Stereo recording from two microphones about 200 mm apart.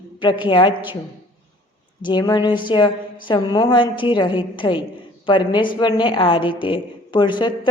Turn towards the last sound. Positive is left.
turn(degrees=25)  # may be behind; listen again after turning